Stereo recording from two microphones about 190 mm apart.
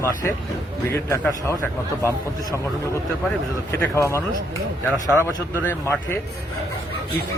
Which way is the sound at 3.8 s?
15° left (ahead or behind).